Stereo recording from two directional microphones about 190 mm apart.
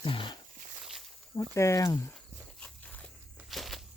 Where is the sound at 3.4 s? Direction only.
Centre (ahead or behind).